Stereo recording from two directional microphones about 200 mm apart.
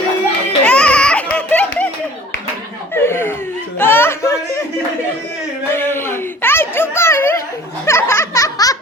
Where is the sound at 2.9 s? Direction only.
10° left (ahead or behind).